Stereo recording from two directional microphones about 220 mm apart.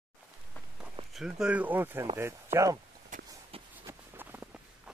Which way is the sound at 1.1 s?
5° right (ahead or behind).